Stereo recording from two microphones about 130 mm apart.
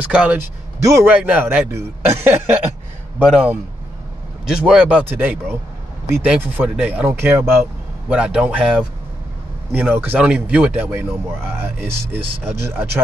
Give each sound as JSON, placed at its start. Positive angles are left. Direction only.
{"t": 0.0, "sound": "a man's voice", "side_deg": -10}
{"t": 0.7, "sound": "a man's voice", "side_deg": -25}
{"t": 1.0, "sound": "a man's voice", "side_deg": -10}
{"t": 4.5, "sound": "a man's voice", "side_deg": -5}
{"t": 8.1, "sound": "a man's voice", "side_deg": -5}